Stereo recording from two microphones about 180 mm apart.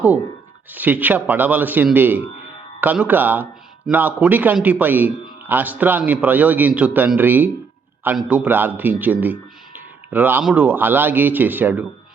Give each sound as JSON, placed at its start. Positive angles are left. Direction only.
{"t": 0.7, "sound": "speech", "side_deg": -10}